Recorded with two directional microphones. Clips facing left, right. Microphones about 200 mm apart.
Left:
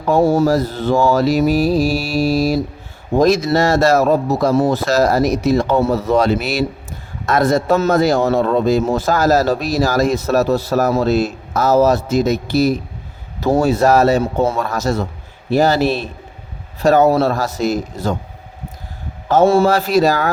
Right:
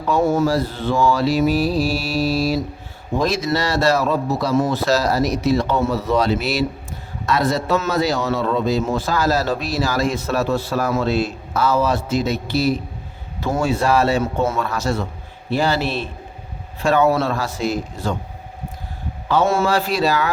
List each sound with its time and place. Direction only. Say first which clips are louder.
0.2 s a man's voice: left 4 dB; 35° left (ahead or behind)
2.0 s mantra: left 3 dB; 10° left (ahead or behind)
2.3 s a man's voice: left 4 dB; 45° left (ahead or behind)
19.5 s a man's voice: left 5 dB; 40° left (ahead or behind)